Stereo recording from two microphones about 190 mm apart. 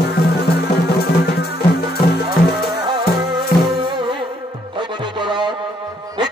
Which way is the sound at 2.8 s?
25° right (ahead or behind).